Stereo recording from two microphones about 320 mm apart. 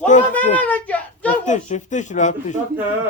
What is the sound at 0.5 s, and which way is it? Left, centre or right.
Speech, centre.